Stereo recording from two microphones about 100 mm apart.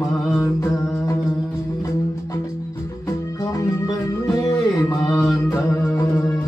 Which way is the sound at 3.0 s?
35° left (ahead or behind).